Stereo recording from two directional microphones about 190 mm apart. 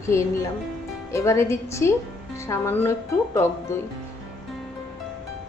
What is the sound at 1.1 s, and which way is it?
Speech, 15° left (ahead or behind).